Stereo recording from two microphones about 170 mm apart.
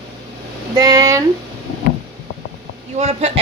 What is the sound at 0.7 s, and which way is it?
Speech, 20° right (ahead or behind).